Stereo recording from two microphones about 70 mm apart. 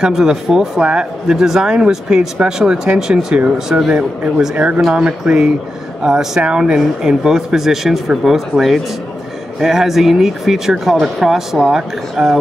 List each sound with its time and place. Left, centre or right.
0.0 s speech: centre